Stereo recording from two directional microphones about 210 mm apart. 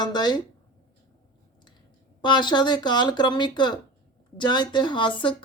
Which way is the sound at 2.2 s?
20° left (ahead or behind).